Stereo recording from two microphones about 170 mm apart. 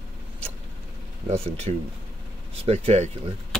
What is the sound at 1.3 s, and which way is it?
Speech, 35° right (ahead or behind).